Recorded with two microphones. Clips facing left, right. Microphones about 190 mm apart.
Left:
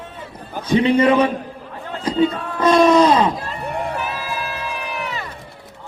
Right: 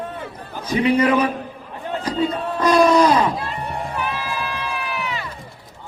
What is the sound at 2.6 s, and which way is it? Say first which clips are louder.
Speech: left 2 dB; 25° left (ahead or behind).